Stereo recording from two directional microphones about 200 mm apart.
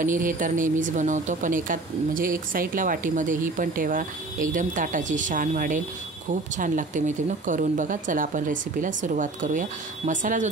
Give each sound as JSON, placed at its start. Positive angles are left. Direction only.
{"t": 0.0, "sound": "speech", "side_deg": -40}